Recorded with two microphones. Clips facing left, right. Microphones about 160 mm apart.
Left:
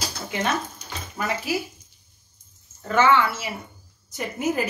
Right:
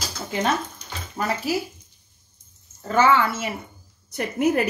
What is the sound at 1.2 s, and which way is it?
Speech, 15° right (ahead or behind).